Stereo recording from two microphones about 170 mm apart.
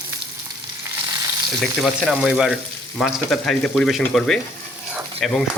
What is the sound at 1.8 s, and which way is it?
Speech, centre (ahead or behind).